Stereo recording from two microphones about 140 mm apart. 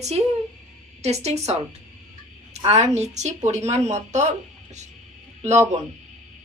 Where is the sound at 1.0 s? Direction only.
50° right (ahead or behind).